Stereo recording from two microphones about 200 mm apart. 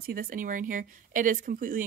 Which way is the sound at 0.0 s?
45° right (ahead or behind).